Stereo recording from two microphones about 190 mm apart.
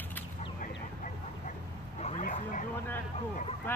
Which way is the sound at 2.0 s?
40° left (ahead or behind).